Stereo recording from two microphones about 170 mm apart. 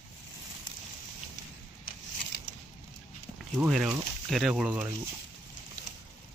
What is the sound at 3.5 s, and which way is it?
Speech, 5° right (ahead or behind).